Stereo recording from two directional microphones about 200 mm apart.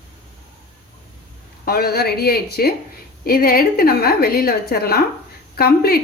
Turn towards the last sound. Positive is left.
turn(degrees=50)  # may be behind; listen again after turning